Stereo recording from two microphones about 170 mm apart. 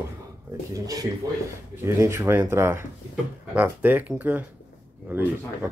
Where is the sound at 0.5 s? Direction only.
20° right (ahead or behind).